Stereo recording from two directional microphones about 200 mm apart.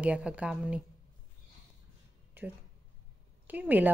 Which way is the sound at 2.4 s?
10° right (ahead or behind).